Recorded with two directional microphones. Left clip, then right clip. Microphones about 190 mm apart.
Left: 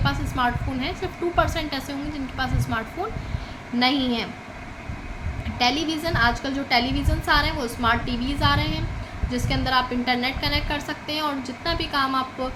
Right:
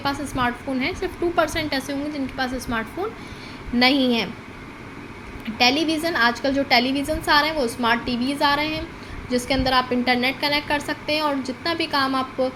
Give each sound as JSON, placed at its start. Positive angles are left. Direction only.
{"t": 0.0, "sound": "a woman's voice", "side_deg": -20}
{"t": 3.8, "sound": "a woman's voice", "side_deg": -25}
{"t": 5.5, "sound": "a woman's voice", "side_deg": -25}